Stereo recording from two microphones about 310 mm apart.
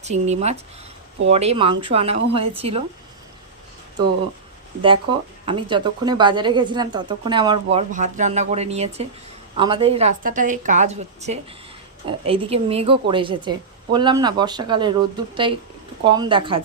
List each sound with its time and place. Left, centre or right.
0.0 s a woman's voice: right
4.8 s a woman's voice: centre
16.0 s speech: centre